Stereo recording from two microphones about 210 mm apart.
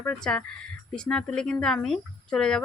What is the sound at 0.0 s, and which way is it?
Speech, 5° left (ahead or behind).